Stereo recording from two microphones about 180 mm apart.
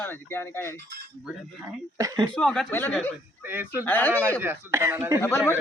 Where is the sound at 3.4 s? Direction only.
10° right (ahead or behind).